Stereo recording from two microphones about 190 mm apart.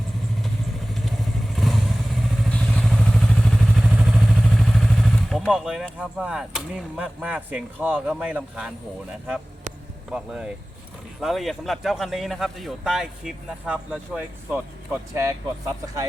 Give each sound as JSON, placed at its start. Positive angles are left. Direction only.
{"t": 1.5, "sound": "vehicle", "side_deg": 0}
{"t": 7.9, "sound": "speech", "side_deg": -5}
{"t": 10.1, "sound": "speech", "side_deg": -5}
{"t": 15.1, "sound": "speech", "side_deg": -15}